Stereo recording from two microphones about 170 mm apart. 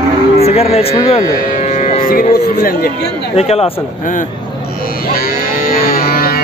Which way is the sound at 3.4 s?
35° left (ahead or behind).